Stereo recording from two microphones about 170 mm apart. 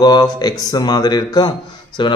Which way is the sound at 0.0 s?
25° left (ahead or behind).